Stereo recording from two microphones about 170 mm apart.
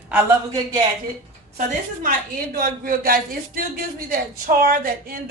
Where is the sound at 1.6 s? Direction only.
55° right (ahead or behind).